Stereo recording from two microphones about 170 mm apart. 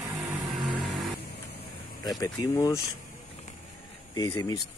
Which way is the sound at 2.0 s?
20° left (ahead or behind).